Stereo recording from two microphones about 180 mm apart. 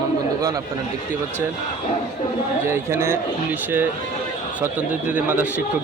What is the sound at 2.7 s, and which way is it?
Speech, 15° right (ahead or behind).